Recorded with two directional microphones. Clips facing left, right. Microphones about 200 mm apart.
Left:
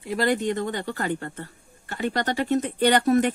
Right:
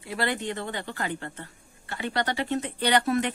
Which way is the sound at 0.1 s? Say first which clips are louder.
Left 6 dB; 45° left (ahead or behind).